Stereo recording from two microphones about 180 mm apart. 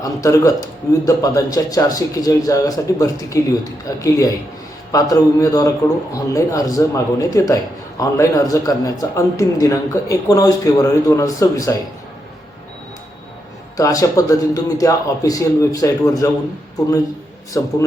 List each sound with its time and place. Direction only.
0.0 s a man's voice: 20° left (ahead or behind)
13.7 s a man's voice: 20° left (ahead or behind)
17.5 s speech: 15° left (ahead or behind)